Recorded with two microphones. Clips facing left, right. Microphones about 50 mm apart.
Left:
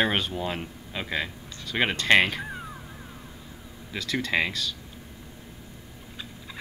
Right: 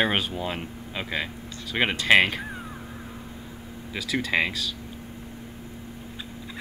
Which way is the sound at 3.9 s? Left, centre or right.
Centre.